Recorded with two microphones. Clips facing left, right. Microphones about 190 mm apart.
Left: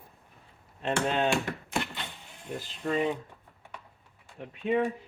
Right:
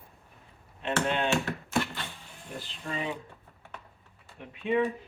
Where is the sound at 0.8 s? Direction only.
40° left (ahead or behind).